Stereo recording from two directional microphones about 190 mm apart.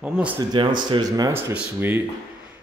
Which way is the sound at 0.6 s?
25° right (ahead or behind).